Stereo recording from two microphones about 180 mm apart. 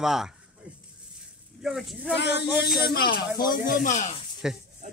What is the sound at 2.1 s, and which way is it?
Speech, 70° left (ahead or behind).